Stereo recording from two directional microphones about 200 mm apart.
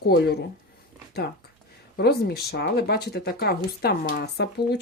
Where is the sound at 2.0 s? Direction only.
55° left (ahead or behind).